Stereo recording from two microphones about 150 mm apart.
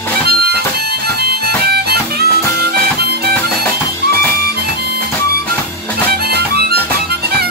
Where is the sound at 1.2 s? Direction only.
90° right.